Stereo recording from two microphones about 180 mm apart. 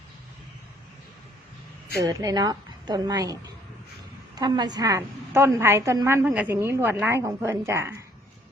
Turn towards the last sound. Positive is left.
turn(degrees=-15)  # may be behind; listen again after turning